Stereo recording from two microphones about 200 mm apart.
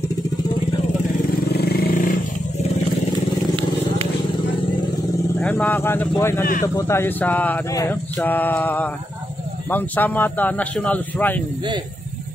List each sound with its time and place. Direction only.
1.5 s vehicle: 50° left (ahead or behind)
5.4 s speech: 10° left (ahead or behind)